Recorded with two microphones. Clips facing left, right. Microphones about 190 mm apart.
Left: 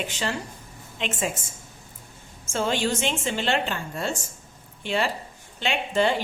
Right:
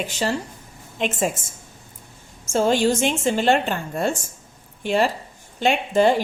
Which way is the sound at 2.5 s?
40° right (ahead or behind).